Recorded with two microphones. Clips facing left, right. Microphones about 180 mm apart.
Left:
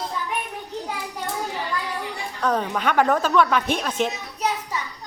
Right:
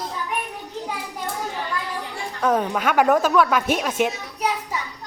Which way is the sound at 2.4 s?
5° right (ahead or behind).